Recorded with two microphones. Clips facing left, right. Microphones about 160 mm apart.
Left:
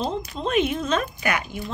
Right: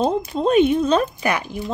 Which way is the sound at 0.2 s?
30° right (ahead or behind).